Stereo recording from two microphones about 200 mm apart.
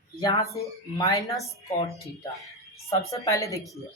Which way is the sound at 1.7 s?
30° left (ahead or behind).